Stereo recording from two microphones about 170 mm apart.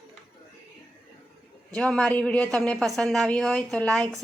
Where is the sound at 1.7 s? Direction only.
5° left (ahead or behind).